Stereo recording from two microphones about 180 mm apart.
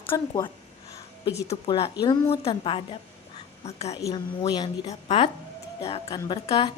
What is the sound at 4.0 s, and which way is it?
Speech, 20° left (ahead or behind).